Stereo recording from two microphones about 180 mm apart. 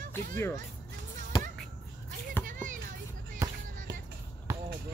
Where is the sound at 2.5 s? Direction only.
45° right (ahead or behind).